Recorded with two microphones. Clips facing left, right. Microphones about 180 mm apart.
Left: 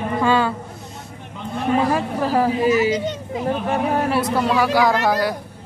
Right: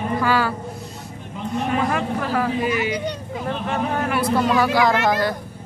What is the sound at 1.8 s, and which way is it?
Speech, 35° left (ahead or behind).